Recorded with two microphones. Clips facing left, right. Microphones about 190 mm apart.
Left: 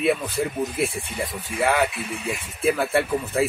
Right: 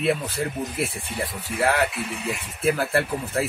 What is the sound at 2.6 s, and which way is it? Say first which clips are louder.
Speech: left 1 dB; centre (ahead or behind).